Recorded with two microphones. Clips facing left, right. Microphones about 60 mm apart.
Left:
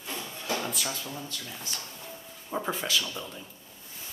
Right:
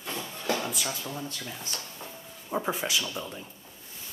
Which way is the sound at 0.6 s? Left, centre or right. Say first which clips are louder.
Right 1 dB; centre.